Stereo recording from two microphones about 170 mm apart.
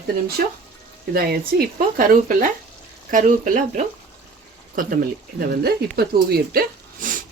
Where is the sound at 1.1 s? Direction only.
65° right (ahead or behind).